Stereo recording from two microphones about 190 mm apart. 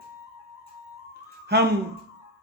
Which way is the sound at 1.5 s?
60° right (ahead or behind).